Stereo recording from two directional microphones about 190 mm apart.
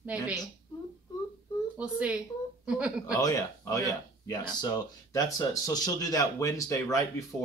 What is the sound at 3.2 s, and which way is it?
Speech, 15° left (ahead or behind).